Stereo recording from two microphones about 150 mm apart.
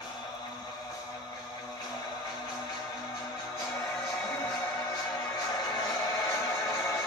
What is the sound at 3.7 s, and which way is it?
Music, 20° left (ahead or behind).